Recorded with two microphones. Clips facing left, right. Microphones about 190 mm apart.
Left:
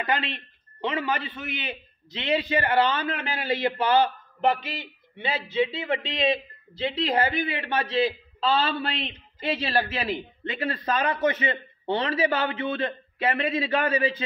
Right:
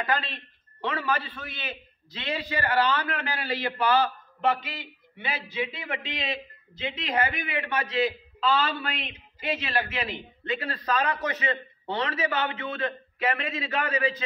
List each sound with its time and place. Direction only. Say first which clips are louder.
0.0 s a man's voice: left 1 dB; 20° left (ahead or behind)